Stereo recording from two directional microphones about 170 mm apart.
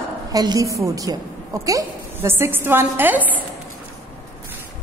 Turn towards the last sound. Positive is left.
turn(degrees=-10)  # may be behind; listen again after turning